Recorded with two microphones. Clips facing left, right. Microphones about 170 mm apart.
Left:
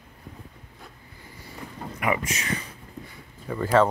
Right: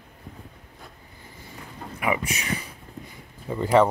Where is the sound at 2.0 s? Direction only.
10° right (ahead or behind).